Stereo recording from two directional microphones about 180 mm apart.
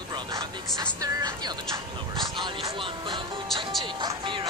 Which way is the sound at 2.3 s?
25° right (ahead or behind).